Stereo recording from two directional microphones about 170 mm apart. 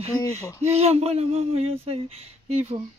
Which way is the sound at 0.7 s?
40° right (ahead or behind).